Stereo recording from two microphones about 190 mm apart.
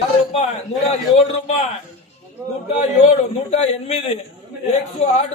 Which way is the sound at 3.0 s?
30° left (ahead or behind).